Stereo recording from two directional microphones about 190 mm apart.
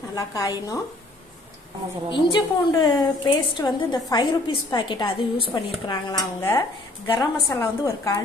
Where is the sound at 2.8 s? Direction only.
25° left (ahead or behind).